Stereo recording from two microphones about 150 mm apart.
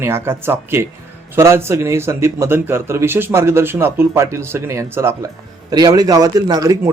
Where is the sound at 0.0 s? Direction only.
15° right (ahead or behind).